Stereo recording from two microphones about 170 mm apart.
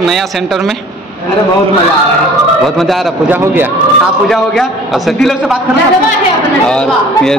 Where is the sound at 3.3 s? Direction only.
10° right (ahead or behind).